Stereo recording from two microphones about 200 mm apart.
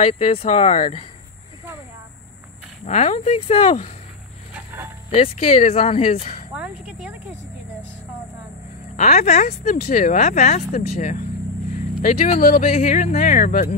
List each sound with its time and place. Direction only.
0.0 s speech: 30° left (ahead or behind)
2.8 s speech: 35° left (ahead or behind)
5.1 s speech: 30° left (ahead or behind)
6.5 s speech: 5° right (ahead or behind)
8.9 s speech: 35° left (ahead or behind)
12.4 s speech: 50° left (ahead or behind)
12.7 s speech: 35° left (ahead or behind)